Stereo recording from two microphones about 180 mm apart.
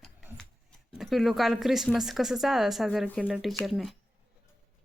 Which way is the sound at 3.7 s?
Centre (ahead or behind).